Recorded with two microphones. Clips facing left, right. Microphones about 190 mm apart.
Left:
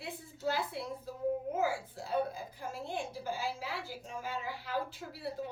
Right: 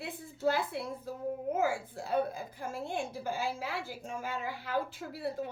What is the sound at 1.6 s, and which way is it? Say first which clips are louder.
A woman's voice: right 2 dB; 50° right (ahead or behind).